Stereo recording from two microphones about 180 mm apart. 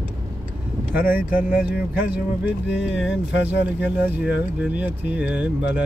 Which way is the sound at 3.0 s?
90° left.